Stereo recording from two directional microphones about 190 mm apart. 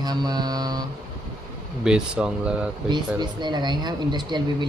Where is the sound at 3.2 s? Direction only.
25° right (ahead or behind).